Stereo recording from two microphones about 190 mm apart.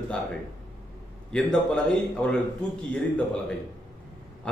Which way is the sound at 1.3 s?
5° left (ahead or behind).